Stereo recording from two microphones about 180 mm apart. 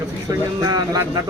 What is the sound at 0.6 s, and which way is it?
Speech, 20° right (ahead or behind).